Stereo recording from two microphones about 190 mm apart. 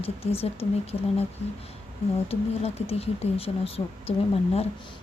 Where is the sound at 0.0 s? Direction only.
30° left (ahead or behind).